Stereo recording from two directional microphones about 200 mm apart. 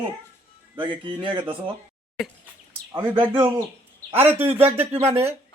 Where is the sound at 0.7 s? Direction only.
25° right (ahead or behind).